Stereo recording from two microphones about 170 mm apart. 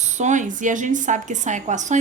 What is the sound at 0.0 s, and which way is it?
A woman's voice, 45° right (ahead or behind).